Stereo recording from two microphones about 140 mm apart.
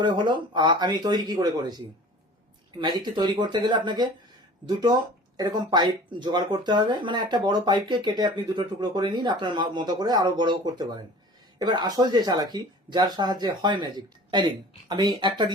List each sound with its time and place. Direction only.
0.0 s speech: 35° right (ahead or behind)